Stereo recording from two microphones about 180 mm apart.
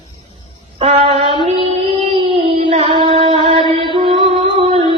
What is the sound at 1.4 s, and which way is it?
Mantra, 30° right (ahead or behind).